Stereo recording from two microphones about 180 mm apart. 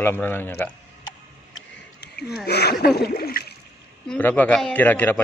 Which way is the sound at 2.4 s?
65° left (ahead or behind).